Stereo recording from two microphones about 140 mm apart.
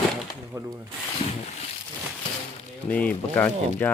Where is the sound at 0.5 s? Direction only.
20° right (ahead or behind).